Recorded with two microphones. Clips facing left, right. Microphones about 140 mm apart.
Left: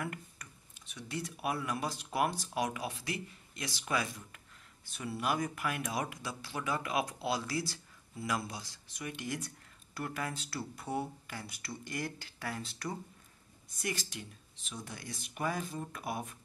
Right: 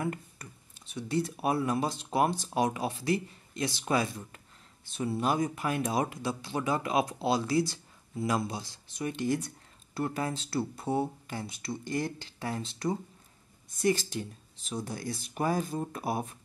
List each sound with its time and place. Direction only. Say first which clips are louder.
0.0 s speech: right 7 dB; 30° right (ahead or behind)